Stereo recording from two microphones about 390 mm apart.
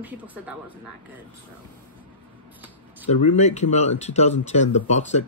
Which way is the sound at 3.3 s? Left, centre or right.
Centre.